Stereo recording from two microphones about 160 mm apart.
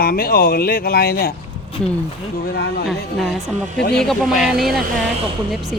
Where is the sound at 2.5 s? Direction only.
75° left (ahead or behind).